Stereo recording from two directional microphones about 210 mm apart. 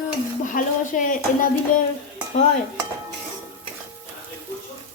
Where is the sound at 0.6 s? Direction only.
40° left (ahead or behind).